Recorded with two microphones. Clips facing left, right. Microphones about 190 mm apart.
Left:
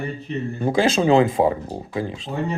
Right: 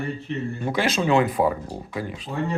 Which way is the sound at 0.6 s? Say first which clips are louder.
Left 6 dB; 30° left (ahead or behind).